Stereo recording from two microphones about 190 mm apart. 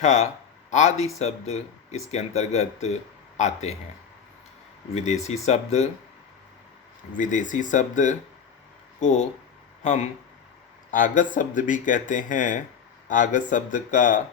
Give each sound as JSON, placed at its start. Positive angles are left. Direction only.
{"t": 0.0, "sound": "speech", "side_deg": 35}
{"t": 4.9, "sound": "speech", "side_deg": 35}
{"t": 7.2, "sound": "speech", "side_deg": 40}